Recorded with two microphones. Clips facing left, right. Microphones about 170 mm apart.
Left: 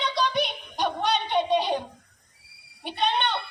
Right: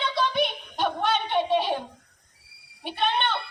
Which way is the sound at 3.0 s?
20° left (ahead or behind).